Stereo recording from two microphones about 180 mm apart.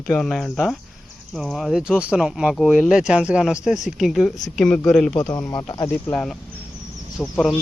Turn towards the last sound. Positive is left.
turn(degrees=5)  # may be behind; listen again after turning